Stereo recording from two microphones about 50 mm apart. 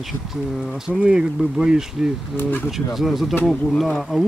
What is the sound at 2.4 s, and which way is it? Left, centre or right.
Speech, left.